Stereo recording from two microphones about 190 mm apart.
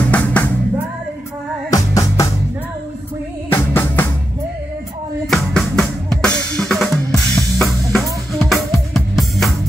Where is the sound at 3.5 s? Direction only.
10° left (ahead or behind).